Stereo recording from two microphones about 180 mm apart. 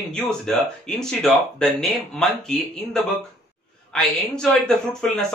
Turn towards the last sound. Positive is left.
turn(degrees=5)  # may be behind; listen again after turning